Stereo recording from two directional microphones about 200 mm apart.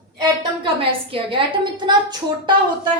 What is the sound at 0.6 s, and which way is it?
A woman's voice, 25° right (ahead or behind).